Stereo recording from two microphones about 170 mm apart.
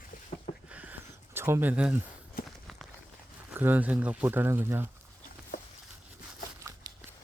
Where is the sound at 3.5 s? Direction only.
10° right (ahead or behind).